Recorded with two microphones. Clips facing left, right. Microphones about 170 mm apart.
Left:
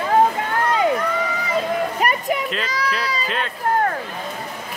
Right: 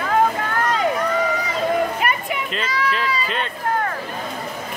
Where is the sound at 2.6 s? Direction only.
40° left (ahead or behind).